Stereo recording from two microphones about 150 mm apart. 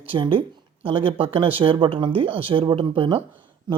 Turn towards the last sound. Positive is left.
turn(degrees=-30)  # may be behind; listen again after turning